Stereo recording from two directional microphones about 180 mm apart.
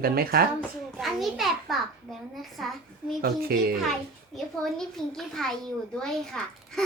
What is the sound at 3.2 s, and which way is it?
Speech, 55° right (ahead or behind).